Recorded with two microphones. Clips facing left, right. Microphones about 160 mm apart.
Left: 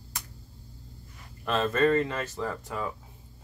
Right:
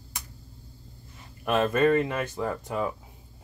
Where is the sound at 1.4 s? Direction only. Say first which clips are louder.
Right 2 dB; 15° right (ahead or behind).